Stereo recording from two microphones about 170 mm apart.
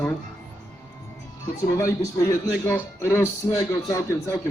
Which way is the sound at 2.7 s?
15° left (ahead or behind).